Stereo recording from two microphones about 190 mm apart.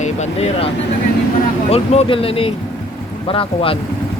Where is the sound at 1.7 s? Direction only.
30° left (ahead or behind).